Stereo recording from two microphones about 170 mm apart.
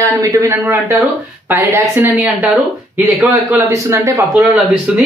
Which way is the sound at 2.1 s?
5° right (ahead or behind).